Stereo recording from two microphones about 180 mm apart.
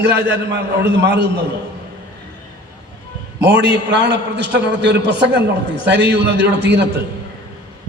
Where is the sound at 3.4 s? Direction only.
75° right (ahead or behind).